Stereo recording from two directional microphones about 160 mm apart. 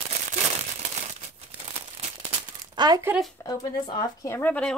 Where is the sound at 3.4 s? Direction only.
25° left (ahead or behind).